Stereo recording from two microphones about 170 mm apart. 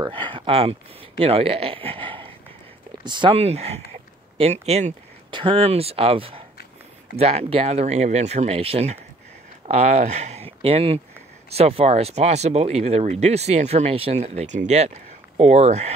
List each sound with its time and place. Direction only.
0.0 s speech: 30° right (ahead or behind)